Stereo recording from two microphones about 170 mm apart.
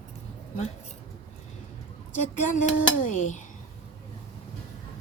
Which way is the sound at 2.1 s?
45° left (ahead or behind).